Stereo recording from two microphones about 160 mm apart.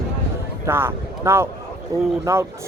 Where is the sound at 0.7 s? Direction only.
15° right (ahead or behind).